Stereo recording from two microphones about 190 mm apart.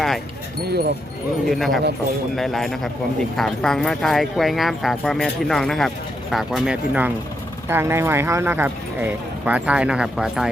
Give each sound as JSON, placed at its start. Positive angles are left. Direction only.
{"t": 0.7, "sound": "speech", "side_deg": -60}
{"t": 1.5, "sound": "speech", "side_deg": 0}